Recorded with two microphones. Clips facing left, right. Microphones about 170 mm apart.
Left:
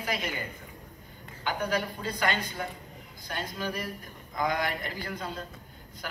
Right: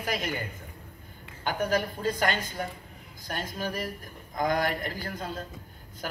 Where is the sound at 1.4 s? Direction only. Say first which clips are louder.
Right 2 dB; 45° right (ahead or behind).